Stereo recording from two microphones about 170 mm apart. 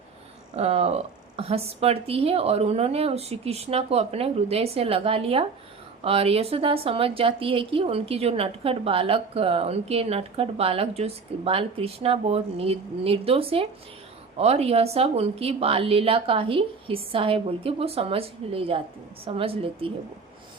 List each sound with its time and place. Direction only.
0.5 s a woman's voice: 40° right (ahead or behind)